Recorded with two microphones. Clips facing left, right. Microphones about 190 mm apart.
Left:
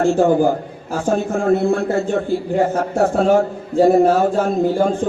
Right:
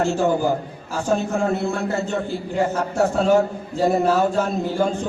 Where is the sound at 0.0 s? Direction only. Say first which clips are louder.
Left 5 dB; 55° left (ahead or behind).